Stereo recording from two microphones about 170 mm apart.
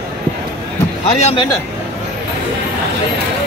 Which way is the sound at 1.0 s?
40° left (ahead or behind).